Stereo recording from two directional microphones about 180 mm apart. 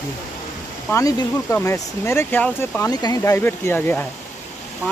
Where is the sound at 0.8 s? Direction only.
15° left (ahead or behind).